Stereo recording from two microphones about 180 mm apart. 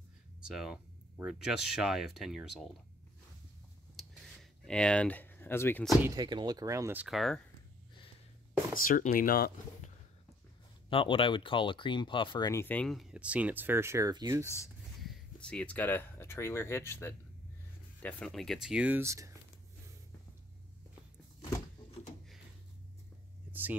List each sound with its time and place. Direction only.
0.4 s speech: 5° right (ahead or behind)
3.9 s a sound: 5° left (ahead or behind)
6.0 s speech: 25° right (ahead or behind); by 7.4 s centre (ahead or behind)
8.8 s speech: 50° left (ahead or behind)
10.9 s speech: 30° left (ahead or behind); by 14.4 s 20° right (ahead or behind)
14.4 s speech: 15° left (ahead or behind)
15.0 s speech: centre (ahead or behind)
18.0 s speech: 5° left (ahead or behind); by 19.3 s 15° right (ahead or behind)
23.5 s a sound: 10° right (ahead or behind)